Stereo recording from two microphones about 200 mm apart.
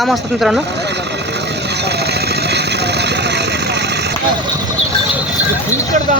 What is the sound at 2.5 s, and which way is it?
Vehicle, 55° right (ahead or behind).